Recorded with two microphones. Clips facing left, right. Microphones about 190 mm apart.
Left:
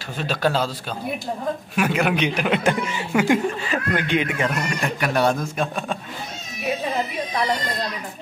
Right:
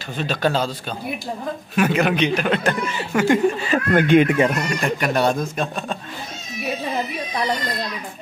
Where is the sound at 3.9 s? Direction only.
50° right (ahead or behind).